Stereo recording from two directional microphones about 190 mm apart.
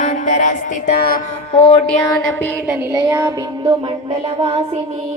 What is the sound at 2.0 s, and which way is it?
Music, 10° left (ahead or behind).